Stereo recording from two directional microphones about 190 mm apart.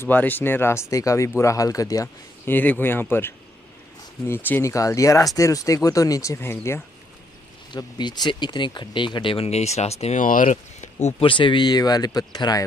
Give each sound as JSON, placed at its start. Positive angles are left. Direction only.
{"t": 0.0, "sound": "speech", "side_deg": 10}